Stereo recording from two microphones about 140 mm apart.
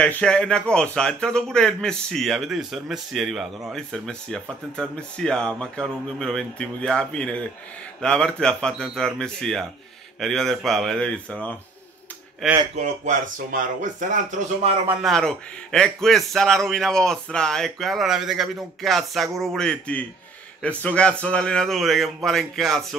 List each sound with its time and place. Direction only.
0.0 s speech: 10° left (ahead or behind)
12.7 s speech: 55° right (ahead or behind)
15.0 s speech: centre (ahead or behind)